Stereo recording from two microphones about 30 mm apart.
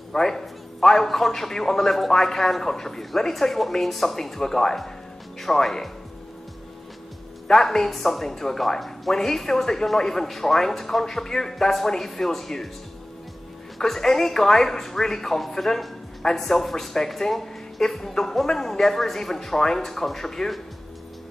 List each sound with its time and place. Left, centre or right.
0.1 s a man's voice: centre
7.6 s a man's voice: centre
13.7 s a man's voice: centre